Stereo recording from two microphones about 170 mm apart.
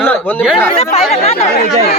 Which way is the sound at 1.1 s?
35° left (ahead or behind).